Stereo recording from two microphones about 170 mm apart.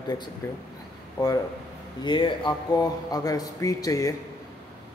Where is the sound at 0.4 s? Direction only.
15° left (ahead or behind).